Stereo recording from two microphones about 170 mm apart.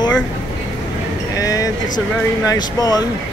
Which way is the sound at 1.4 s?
20° left (ahead or behind).